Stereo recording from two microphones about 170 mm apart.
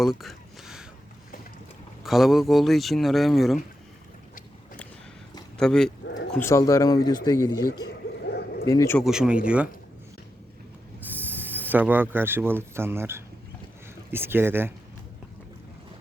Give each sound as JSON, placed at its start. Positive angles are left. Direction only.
{"t": 0.0, "sound": "a sound", "side_deg": 0}
{"t": 2.0, "sound": "speech", "side_deg": 0}
{"t": 5.5, "sound": "speech", "side_deg": 5}
{"t": 6.4, "sound": "speech", "side_deg": 20}
{"t": 8.3, "sound": "bow-wow", "side_deg": 75}
{"t": 8.6, "sound": "speech", "side_deg": 20}
{"t": 9.0, "sound": "speech", "side_deg": -5}
{"t": 11.0, "sound": "speech", "side_deg": -10}